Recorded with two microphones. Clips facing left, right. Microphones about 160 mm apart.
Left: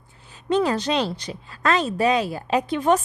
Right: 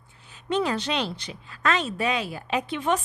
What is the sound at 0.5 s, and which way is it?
Speech, 40° left (ahead or behind).